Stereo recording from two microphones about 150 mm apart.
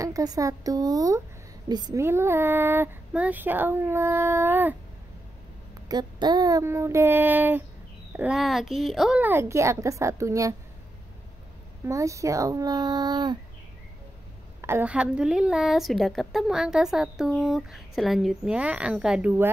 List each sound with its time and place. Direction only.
0.0 s speech: 25° right (ahead or behind)
2.0 s speech: 15° right (ahead or behind)
5.9 s a woman's voice: 30° right (ahead or behind); by 9.2 s centre (ahead or behind)
9.2 s speech: 15° right (ahead or behind)
11.8 s speech: 20° right (ahead or behind)
14.6 s a woman's voice: 15° right (ahead or behind)